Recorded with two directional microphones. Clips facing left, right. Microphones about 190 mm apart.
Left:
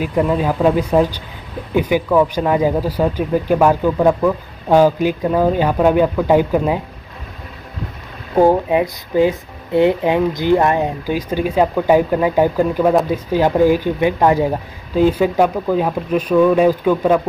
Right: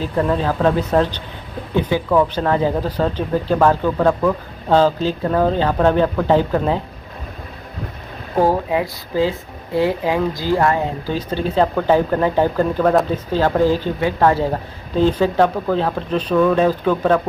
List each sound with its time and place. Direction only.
0.0 s speech: 10° left (ahead or behind)
8.4 s speech: 20° left (ahead or behind)